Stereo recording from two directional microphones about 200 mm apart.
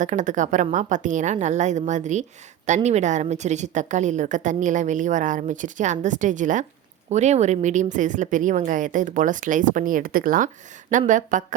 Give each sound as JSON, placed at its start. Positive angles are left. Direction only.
{"t": 0.0, "sound": "a woman's voice", "side_deg": -40}